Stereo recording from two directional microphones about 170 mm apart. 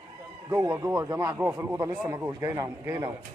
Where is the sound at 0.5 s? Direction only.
20° right (ahead or behind).